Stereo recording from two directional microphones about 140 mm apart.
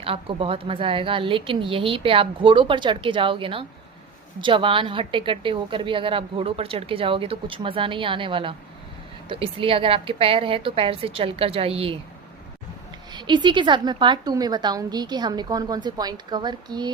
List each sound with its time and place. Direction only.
0.0 s a woman's voice: 40° right (ahead or behind)
13.1 s a woman's voice: 35° right (ahead or behind)